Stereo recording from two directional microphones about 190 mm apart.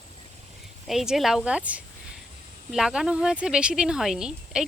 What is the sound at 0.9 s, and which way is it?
Speech, centre (ahead or behind).